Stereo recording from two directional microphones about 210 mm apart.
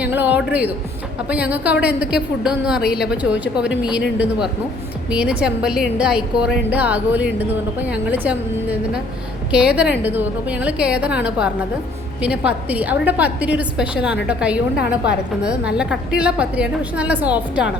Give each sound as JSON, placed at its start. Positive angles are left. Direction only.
{"t": 0.0, "sound": "a woman's voice", "side_deg": -10}